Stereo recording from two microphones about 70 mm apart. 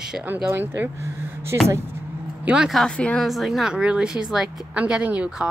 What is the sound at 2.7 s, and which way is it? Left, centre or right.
A woman's voice, centre.